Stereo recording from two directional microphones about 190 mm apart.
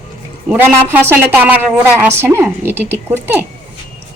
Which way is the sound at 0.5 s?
10° right (ahead or behind).